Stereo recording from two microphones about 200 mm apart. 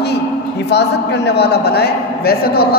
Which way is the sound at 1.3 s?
55° left (ahead or behind).